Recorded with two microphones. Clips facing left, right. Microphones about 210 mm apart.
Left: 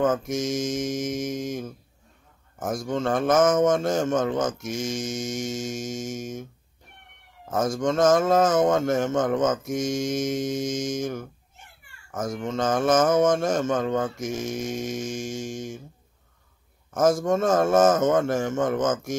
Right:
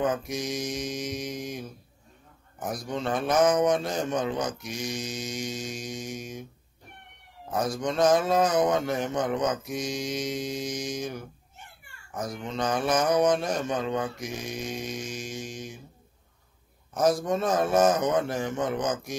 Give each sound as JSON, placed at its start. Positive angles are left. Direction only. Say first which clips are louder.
{"t": 0.0, "sound": "speech", "louder": "left 5 dB", "side_deg": 45}
{"t": 7.4, "sound": "a child's voice", "louder": "left 4 dB", "side_deg": 45}
{"t": 16.9, "sound": "speech", "louder": "left 3 dB", "side_deg": 50}